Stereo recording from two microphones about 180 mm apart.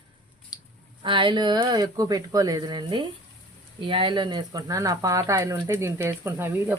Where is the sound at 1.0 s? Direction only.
25° right (ahead or behind).